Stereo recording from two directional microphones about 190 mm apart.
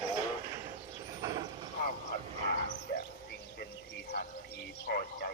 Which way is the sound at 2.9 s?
55° left (ahead or behind).